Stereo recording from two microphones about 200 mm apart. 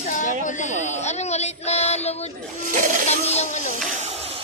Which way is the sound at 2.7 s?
40° right (ahead or behind).